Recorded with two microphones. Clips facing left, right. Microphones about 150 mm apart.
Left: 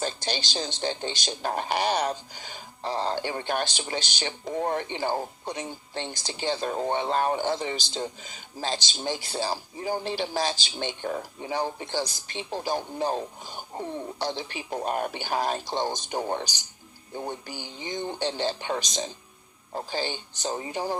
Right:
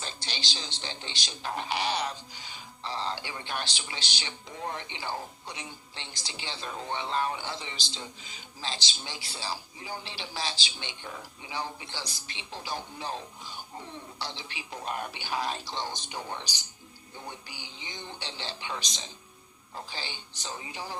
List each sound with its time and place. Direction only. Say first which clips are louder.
0.0 s speech: left 9 dB; 45° left (ahead or behind)